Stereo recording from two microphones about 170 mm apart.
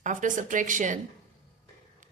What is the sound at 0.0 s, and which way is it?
Speech, 50° right (ahead or behind).